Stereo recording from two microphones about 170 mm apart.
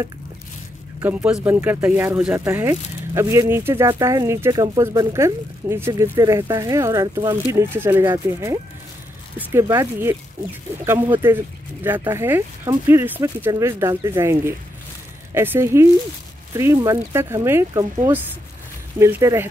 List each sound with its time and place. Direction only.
1.0 s speech: 10° right (ahead or behind)